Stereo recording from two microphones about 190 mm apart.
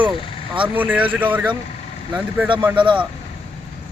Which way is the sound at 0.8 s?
10° right (ahead or behind).